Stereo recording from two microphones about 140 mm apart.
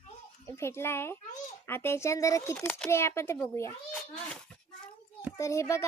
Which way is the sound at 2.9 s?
20° left (ahead or behind).